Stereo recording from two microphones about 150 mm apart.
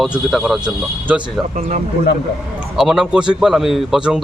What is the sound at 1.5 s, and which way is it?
Speech, 55° right (ahead or behind).